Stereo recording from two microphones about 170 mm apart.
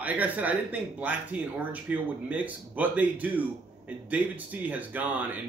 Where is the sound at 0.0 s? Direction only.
10° right (ahead or behind).